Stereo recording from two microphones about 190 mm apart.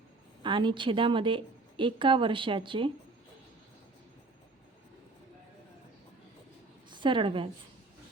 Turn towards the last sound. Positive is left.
turn(degrees=-25)  # may be behind; listen again after turning